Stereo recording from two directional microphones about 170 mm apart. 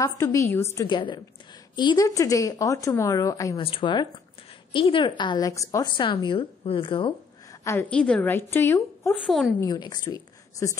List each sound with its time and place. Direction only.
0.0 s a woman's voice: 20° left (ahead or behind)
0.8 s a woman's voice: 25° left (ahead or behind)
3.5 s a woman's voice: 30° left (ahead or behind)
7.6 s a woman's voice: 10° left (ahead or behind)
9.2 s a woman's voice: centre (ahead or behind)
9.6 s a woman's voice: 25° left (ahead or behind)